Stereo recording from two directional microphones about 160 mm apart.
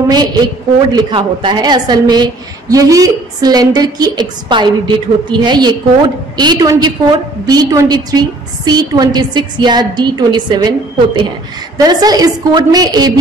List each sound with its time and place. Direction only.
0.1 s a woman's voice: 25° right (ahead or behind)
11.8 s a woman's voice: 25° right (ahead or behind)